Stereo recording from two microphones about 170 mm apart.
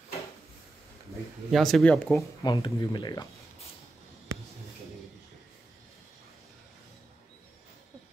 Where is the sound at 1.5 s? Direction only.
Centre (ahead or behind).